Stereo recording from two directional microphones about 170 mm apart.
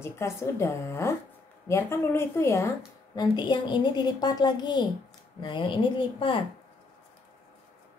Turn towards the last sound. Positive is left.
turn(degrees=30)  # may be behind; listen again after turning